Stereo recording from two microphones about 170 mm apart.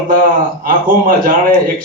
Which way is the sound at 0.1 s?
55° right (ahead or behind).